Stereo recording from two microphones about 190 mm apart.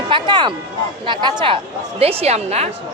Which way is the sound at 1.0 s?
25° right (ahead or behind).